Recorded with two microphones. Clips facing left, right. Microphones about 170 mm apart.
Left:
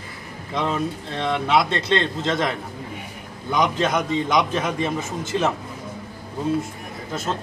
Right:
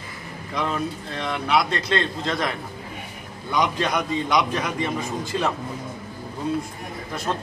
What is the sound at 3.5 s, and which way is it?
A man's voice, 20° left (ahead or behind).